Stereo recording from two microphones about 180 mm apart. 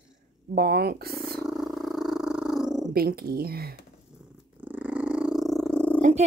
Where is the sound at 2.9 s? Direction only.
55° right (ahead or behind).